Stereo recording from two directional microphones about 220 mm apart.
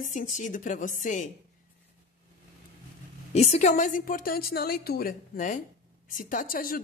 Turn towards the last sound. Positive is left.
turn(degrees=40)  # may be behind; listen again after turning